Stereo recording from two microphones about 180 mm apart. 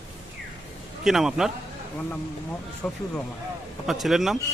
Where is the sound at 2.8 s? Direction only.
5° left (ahead or behind).